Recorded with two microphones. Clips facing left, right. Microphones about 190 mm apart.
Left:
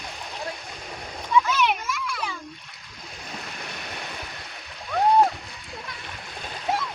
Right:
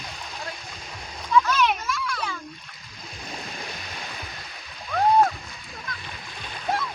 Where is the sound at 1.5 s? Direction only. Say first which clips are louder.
Right 1 dB; 5° left (ahead or behind).